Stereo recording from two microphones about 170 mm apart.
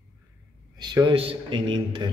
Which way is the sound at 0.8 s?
25° right (ahead or behind).